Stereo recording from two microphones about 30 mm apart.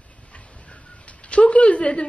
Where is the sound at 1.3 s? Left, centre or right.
Left.